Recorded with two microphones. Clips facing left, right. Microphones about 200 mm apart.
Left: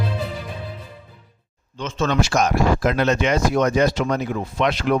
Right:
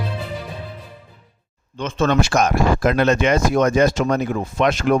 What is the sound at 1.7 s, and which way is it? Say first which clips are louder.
A man's voice: right 3 dB; 55° right (ahead or behind).